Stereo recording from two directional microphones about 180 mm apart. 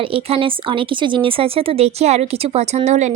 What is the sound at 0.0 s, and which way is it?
A woman's voice, 30° right (ahead or behind).